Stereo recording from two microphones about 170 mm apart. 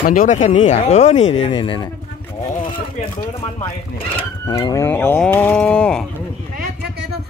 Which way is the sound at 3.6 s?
30° left (ahead or behind).